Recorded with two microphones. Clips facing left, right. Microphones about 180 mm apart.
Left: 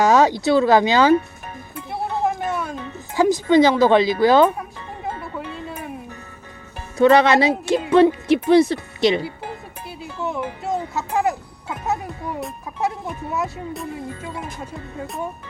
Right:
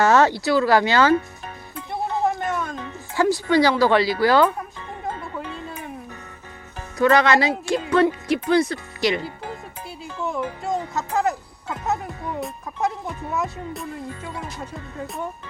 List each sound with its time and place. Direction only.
0.0 s speech: 15° left (ahead or behind)
1.7 s music: 10° left (ahead or behind)
7.0 s speech: 25° left (ahead or behind)
10.0 s speech: 5° left (ahead or behind)